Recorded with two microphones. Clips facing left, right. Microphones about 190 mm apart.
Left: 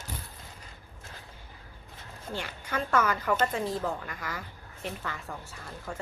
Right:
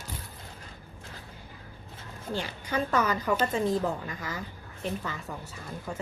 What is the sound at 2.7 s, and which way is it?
A woman's voice, 20° right (ahead or behind).